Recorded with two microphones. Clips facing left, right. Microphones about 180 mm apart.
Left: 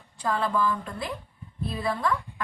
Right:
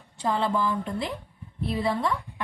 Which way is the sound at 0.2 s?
25° right (ahead or behind).